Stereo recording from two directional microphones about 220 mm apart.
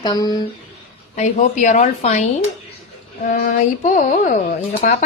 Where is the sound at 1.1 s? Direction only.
35° left (ahead or behind).